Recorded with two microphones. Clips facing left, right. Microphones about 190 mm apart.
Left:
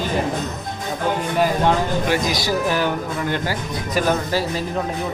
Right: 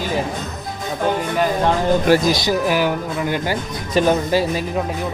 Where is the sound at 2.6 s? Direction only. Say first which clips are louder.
Right 2 dB; 10° right (ahead or behind).